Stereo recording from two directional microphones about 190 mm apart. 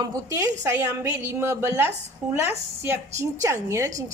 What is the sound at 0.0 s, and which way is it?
A woman's voice, 15° right (ahead or behind).